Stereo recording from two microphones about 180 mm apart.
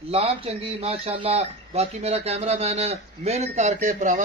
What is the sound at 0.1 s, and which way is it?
A man's voice, 35° right (ahead or behind).